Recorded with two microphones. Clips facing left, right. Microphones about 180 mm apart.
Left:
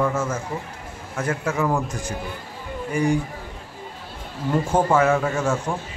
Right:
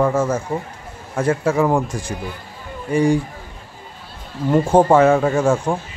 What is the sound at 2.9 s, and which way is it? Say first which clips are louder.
Speech: right 5 dB; 30° right (ahead or behind).